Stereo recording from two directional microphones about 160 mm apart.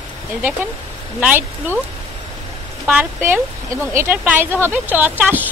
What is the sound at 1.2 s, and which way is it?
Speech, 10° right (ahead or behind).